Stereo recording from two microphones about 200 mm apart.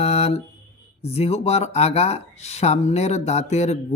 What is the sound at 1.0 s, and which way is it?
Speech, 30° left (ahead or behind).